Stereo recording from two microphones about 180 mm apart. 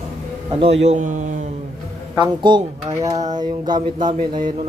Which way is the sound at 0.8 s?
40° right (ahead or behind).